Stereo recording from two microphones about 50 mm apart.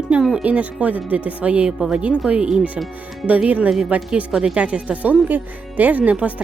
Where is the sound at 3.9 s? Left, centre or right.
Right.